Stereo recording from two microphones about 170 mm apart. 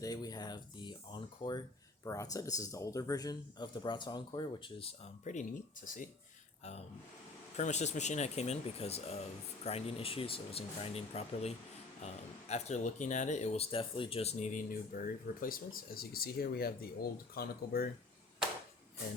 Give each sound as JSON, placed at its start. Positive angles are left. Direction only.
{"t": 0.0, "sound": "speech", "side_deg": 20}
{"t": 7.5, "sound": "speech", "side_deg": 45}